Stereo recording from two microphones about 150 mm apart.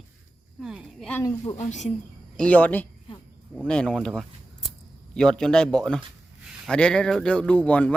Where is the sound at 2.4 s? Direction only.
10° left (ahead or behind).